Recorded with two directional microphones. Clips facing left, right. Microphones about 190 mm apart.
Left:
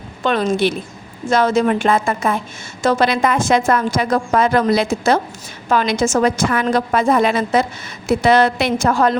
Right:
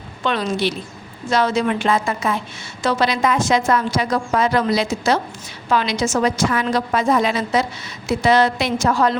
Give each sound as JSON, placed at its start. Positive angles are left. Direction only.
{"t": 0.2, "sound": "a woman's voice", "side_deg": 45}